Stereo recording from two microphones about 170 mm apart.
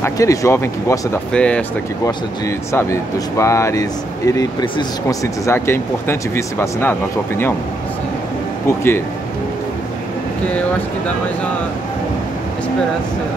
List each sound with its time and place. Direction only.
0.0 s speech: 20° left (ahead or behind)
2.0 s speech: 15° left (ahead or behind)
8.6 s speech: 15° left (ahead or behind)